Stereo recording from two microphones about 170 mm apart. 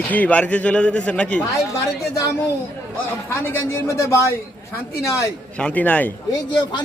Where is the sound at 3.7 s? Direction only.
15° left (ahead or behind).